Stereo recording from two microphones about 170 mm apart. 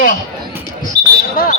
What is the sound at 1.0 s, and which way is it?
Basketball bounce, 75° right (ahead or behind).